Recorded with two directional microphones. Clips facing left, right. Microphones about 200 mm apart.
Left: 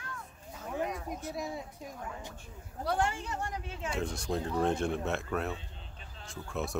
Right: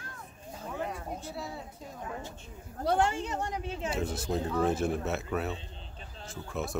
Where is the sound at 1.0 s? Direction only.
30° right (ahead or behind).